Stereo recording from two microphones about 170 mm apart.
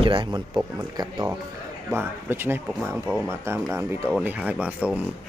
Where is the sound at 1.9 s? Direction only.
15° right (ahead or behind).